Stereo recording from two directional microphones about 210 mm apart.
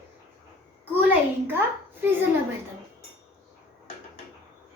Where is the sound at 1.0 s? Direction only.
10° right (ahead or behind).